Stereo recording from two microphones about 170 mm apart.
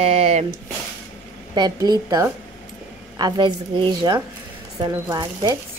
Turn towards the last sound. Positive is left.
turn(degrees=-25)  # may be behind; listen again after turning